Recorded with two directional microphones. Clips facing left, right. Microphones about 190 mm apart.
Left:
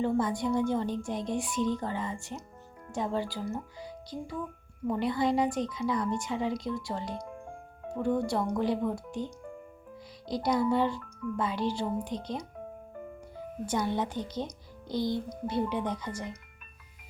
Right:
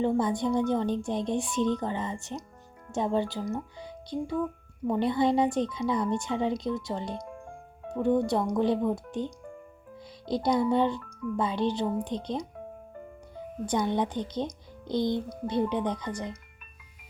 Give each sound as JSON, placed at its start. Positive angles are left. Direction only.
{"t": 0.0, "sound": "speech", "side_deg": -20}
{"t": 13.7, "sound": "speech", "side_deg": -20}